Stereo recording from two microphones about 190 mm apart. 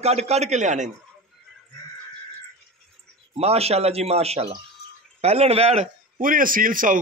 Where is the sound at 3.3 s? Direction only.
35° right (ahead or behind).